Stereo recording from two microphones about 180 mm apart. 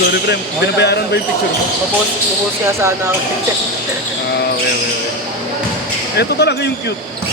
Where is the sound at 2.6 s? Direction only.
15° right (ahead or behind).